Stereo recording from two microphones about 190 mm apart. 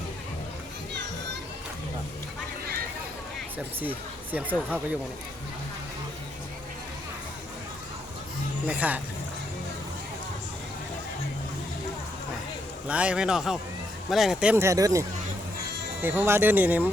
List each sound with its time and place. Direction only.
3.8 s speech: 10° right (ahead or behind)
8.6 s speech: 5° right (ahead or behind)
12.9 s a man's voice: 5° right (ahead or behind)
14.5 s speech: 15° right (ahead or behind)